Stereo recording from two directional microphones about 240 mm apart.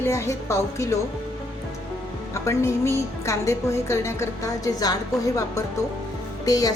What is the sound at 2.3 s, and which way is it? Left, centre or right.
A woman's voice, centre.